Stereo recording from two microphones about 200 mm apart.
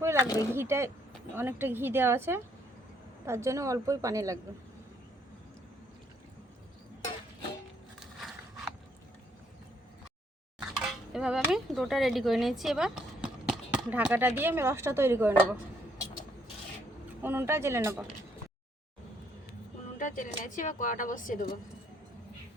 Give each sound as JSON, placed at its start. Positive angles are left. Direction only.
{"t": 0.0, "sound": "a sound", "side_deg": -15}
{"t": 0.5, "sound": "a woman's voice", "side_deg": -10}
{"t": 7.9, "sound": "a sound", "side_deg": 0}
{"t": 10.8, "sound": "speech", "side_deg": -5}
{"t": 17.2, "sound": "a woman's voice", "side_deg": -10}
{"t": 20.0, "sound": "speech", "side_deg": 40}